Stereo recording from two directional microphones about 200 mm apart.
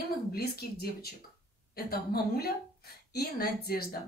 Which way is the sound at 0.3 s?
50° left (ahead or behind).